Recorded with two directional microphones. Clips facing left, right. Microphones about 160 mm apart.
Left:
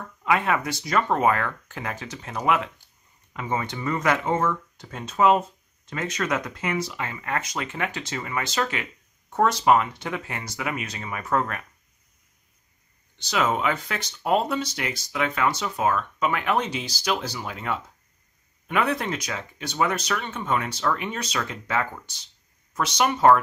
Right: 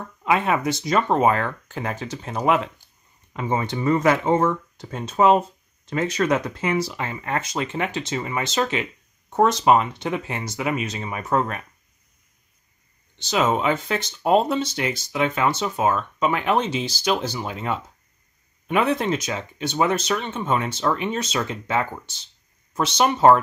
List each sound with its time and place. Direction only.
0.2 s speech: 20° right (ahead or behind)
13.2 s speech: 25° right (ahead or behind)